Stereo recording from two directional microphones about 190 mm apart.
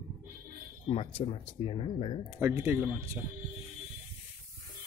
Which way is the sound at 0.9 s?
30° left (ahead or behind).